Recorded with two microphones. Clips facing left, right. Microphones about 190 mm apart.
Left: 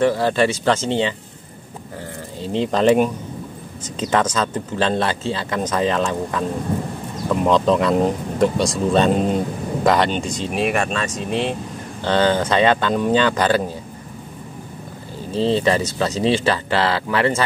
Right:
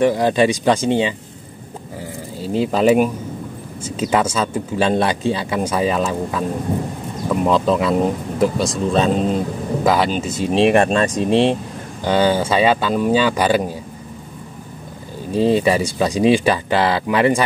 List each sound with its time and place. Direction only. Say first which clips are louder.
0.0 s speech: right 2 dB; 15° right (ahead or behind)
2.4 s speech: right 1 dB; 5° right (ahead or behind)
10.5 s speech: right 8 dB; 30° right (ahead or behind)
12.0 s speech: right 1 dB; 10° right (ahead or behind)
15.3 s speech: right 2 dB; 10° right (ahead or behind)